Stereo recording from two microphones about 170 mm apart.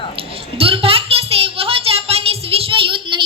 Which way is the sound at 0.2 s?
35° right (ahead or behind).